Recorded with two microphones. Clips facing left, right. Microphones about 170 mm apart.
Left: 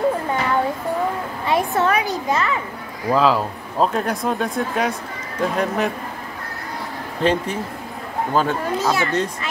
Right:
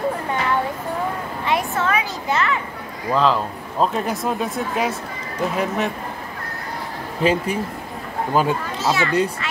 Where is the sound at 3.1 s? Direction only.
5° left (ahead or behind).